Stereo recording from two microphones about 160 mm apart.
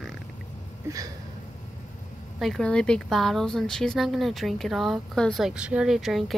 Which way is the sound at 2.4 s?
5° left (ahead or behind).